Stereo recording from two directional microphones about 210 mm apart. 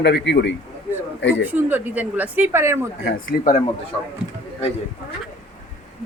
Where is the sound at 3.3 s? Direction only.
45° left (ahead or behind).